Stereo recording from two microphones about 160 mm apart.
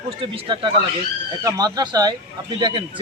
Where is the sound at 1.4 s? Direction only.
20° right (ahead or behind).